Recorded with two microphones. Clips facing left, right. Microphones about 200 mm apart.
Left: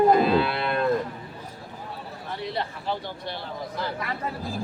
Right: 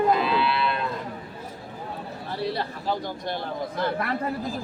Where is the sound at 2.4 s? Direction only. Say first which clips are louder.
Right 3 dB; 35° right (ahead or behind); by 4.1 s 55° right (ahead or behind).